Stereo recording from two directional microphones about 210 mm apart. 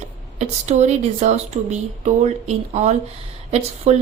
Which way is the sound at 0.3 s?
30° right (ahead or behind).